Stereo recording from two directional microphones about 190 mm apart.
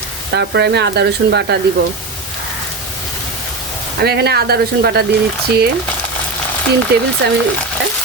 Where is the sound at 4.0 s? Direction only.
60° right (ahead or behind).